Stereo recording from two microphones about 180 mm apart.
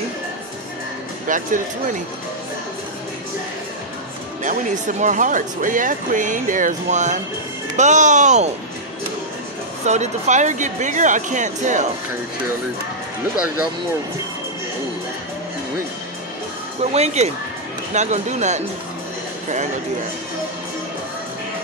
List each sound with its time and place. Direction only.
1.2 s speech: 45° right (ahead or behind)
4.4 s speech: 45° right (ahead or behind)
9.8 s speech: 40° right (ahead or behind)
16.9 s speech: 35° right (ahead or behind)